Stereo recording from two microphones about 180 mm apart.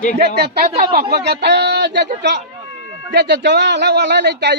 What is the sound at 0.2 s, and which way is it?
A man's voice, 60° right (ahead or behind).